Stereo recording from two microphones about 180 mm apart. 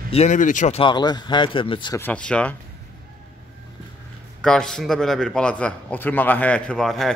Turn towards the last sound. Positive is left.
turn(degrees=0)  # may be behind; listen again after turning